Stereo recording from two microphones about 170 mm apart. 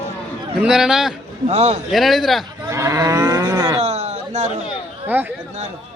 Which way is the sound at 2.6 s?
15° right (ahead or behind).